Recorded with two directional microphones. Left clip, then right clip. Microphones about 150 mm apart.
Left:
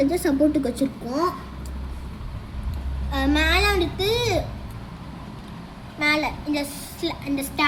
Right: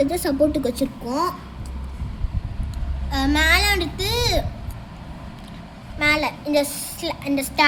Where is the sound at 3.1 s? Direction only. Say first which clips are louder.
Right 3 dB; 90° right.